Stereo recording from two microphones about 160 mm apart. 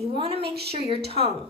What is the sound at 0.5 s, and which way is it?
Speech, 85° right.